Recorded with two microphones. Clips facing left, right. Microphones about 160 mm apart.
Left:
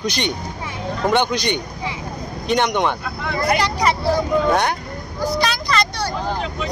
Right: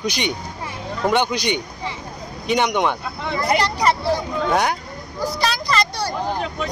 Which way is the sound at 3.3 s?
25° right (ahead or behind).